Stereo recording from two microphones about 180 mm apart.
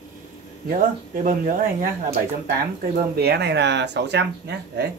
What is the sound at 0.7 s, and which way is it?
Speech, 45° right (ahead or behind).